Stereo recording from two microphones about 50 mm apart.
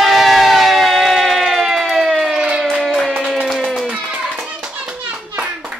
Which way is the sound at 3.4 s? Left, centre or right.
Centre.